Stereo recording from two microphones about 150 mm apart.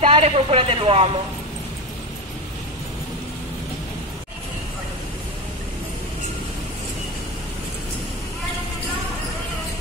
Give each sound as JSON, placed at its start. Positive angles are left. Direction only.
{"t": 0.0, "sound": "speech", "side_deg": -40}